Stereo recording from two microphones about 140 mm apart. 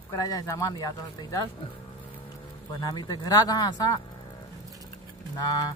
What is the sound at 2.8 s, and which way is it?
Speech, 30° left (ahead or behind).